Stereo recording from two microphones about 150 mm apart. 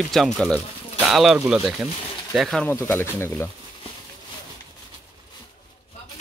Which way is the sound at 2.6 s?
15° left (ahead or behind).